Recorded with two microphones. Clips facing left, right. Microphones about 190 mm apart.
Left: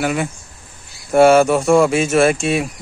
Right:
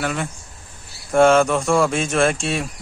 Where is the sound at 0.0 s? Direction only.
10° left (ahead or behind).